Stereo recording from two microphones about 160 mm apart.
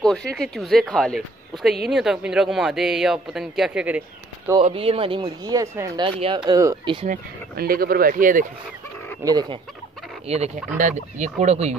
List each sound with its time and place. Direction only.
0.0 s speech: 5° left (ahead or behind)
4.6 s speech: 35° right (ahead or behind); by 6.9 s 20° right (ahead or behind)
7.1 s speech: 65° right (ahead or behind)
9.2 s speech: 25° right (ahead or behind)
10.2 s speech: 40° right (ahead or behind)